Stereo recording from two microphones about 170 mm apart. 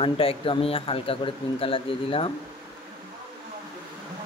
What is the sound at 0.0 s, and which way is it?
Speech, 30° left (ahead or behind).